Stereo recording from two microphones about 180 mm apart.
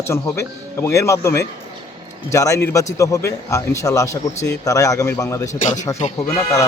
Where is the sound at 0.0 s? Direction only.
15° left (ahead or behind).